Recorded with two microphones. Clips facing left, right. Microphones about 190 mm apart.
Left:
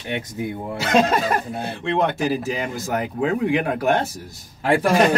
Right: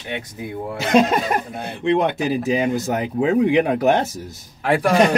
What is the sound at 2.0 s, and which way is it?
Speech, 20° right (ahead or behind).